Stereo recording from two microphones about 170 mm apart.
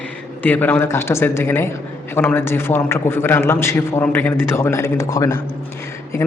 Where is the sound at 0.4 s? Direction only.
10° left (ahead or behind).